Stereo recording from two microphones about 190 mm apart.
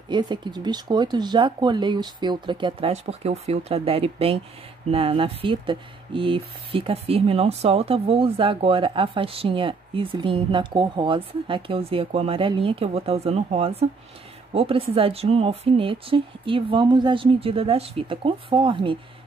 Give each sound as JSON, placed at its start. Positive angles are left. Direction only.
{"t": 0.1, "sound": "speech", "side_deg": -25}